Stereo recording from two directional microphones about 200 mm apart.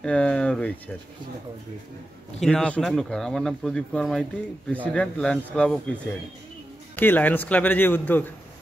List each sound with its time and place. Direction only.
0.0 s speech: 5° left (ahead or behind)
2.4 s speech: 5° left (ahead or behind)
7.0 s speech: 10° left (ahead or behind)